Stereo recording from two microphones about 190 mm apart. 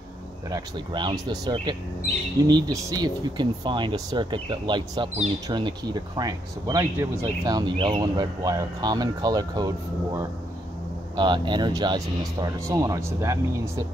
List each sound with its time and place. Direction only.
0.5 s speech: 25° right (ahead or behind)
11.1 s speech: 20° right (ahead or behind)